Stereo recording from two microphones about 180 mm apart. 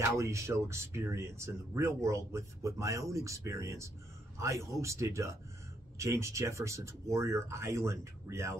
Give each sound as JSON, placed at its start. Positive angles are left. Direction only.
{"t": 0.0, "sound": "speech", "side_deg": -15}